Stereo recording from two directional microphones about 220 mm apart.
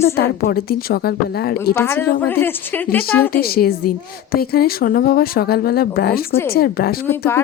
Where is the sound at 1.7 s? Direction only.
10° left (ahead or behind).